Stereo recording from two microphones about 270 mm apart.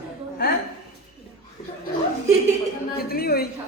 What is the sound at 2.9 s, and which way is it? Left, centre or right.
Speech, left.